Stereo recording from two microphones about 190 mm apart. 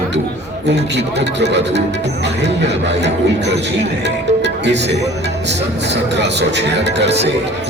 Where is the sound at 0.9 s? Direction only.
65° right (ahead or behind).